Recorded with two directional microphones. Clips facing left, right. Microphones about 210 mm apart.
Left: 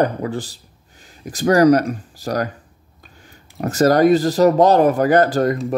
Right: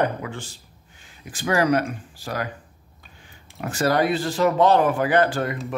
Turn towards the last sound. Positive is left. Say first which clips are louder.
# left 6 dB
turn(degrees=40)  # may be behind; listen again after turning